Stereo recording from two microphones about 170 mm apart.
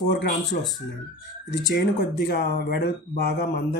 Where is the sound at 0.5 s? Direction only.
65° left (ahead or behind).